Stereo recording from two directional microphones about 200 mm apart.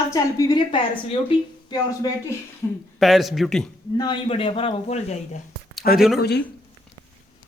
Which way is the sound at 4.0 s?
25° left (ahead or behind).